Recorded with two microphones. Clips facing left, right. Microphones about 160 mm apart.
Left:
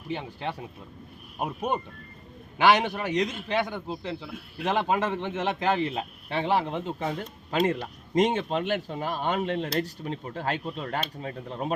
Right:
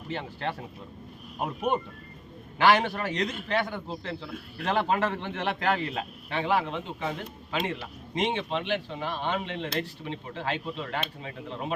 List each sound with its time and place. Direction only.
0.1 s a man's voice: 15° left (ahead or behind); by 11.7 s 40° left (ahead or behind)